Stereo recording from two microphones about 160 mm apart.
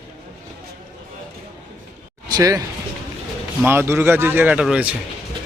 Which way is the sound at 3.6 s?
15° right (ahead or behind).